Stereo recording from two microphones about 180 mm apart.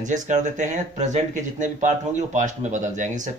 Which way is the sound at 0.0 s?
45° right (ahead or behind).